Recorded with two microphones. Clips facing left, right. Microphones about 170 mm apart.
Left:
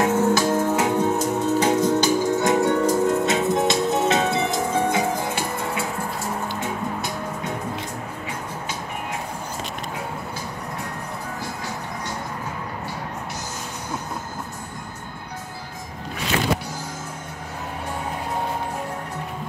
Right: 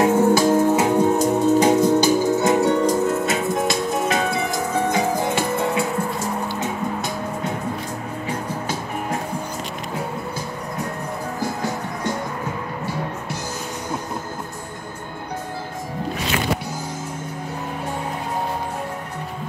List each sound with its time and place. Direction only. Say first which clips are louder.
0.0 s music: right 4 dB; 10° right (ahead or behind)
3.3 s music: left 1 dB; 20° left (ahead or behind)
4.9 s music: right 3 dB; 25° right (ahead or behind)